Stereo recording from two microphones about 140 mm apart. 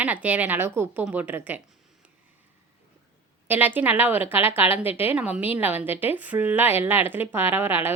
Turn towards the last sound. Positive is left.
turn(degrees=-15)  # may be behind; listen again after turning